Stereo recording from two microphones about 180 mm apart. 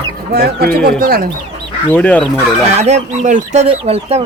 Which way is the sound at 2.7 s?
40° right (ahead or behind).